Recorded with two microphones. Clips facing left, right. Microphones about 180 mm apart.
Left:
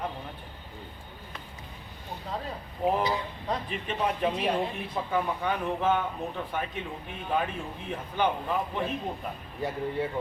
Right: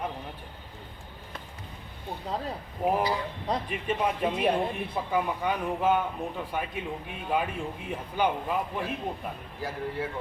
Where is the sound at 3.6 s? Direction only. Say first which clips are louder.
Right 1 dB; 10° right (ahead or behind).